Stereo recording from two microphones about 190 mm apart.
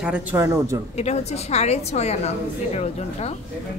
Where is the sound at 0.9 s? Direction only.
35° left (ahead or behind).